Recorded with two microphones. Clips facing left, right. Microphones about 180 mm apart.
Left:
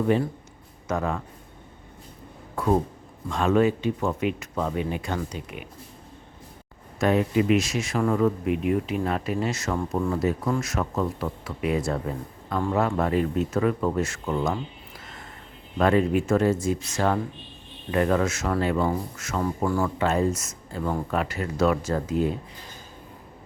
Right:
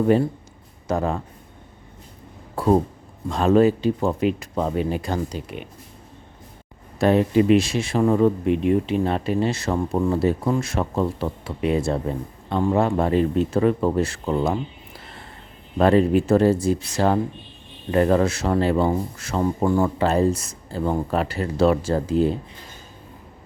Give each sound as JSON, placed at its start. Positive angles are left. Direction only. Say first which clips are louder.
{"t": 0.9, "sound": "speech", "louder": "right 4 dB", "side_deg": -30}
{"t": 2.6, "sound": "speech", "louder": "right 4 dB", "side_deg": -30}
{"t": 7.0, "sound": "speech", "louder": "right 4 dB", "side_deg": -35}
{"t": 15.8, "sound": "speech", "louder": "right 4 dB", "side_deg": -35}